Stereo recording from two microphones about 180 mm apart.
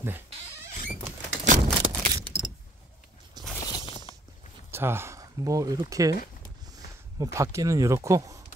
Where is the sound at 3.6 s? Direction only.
25° left (ahead or behind).